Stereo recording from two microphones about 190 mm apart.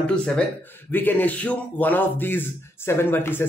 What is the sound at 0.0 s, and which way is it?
A man's voice, 5° left (ahead or behind).